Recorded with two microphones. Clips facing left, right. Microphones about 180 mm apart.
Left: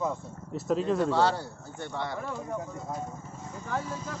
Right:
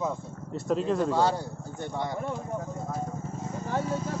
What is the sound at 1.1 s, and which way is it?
Speech, 15° right (ahead or behind).